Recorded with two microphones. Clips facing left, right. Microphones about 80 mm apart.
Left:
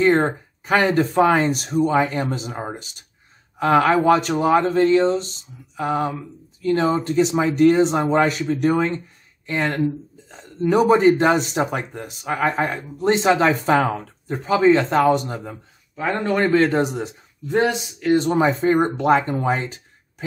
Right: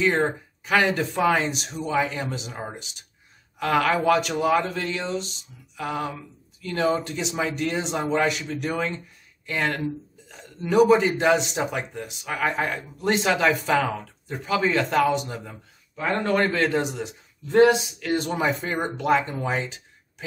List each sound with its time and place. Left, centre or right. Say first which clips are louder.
0.0 s speech: left 5 dB; left
15.0 s speech: left 6 dB; left
16.5 s speech: left 6 dB; left
17.5 s speech: right 3 dB; left
18.4 s speech: left 8 dB; left